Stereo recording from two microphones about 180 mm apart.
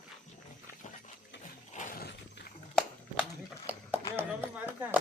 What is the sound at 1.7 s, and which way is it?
Horse, 45° left (ahead or behind).